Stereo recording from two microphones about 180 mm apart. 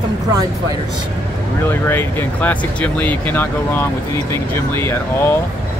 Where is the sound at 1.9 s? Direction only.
10° left (ahead or behind).